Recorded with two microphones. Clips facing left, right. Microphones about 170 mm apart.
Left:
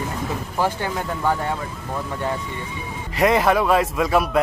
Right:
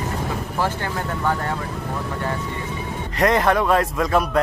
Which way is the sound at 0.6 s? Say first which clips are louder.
Left 2 dB; 15° left (ahead or behind).